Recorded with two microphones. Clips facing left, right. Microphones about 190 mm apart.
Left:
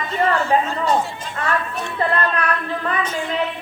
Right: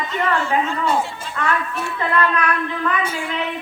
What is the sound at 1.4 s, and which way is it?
Speech, 35° left (ahead or behind).